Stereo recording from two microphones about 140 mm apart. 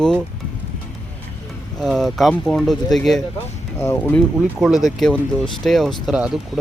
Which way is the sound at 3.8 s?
15° left (ahead or behind).